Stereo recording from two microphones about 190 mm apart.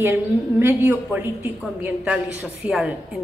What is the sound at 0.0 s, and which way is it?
A woman's voice, 10° right (ahead or behind).